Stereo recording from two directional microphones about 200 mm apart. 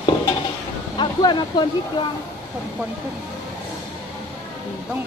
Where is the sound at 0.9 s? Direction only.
20° left (ahead or behind).